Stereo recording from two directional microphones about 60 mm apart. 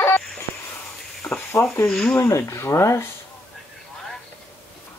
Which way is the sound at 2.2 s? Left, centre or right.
Left.